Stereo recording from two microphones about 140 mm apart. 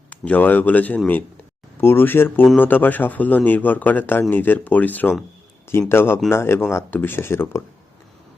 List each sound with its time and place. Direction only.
0.1 s speech: 10° left (ahead or behind)